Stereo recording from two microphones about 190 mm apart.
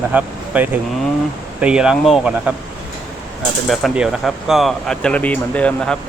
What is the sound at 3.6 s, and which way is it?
Speech, centre (ahead or behind).